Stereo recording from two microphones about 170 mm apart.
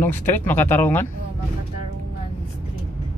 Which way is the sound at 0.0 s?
10° left (ahead or behind).